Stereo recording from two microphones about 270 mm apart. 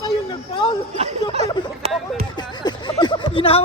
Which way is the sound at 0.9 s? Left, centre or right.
Right.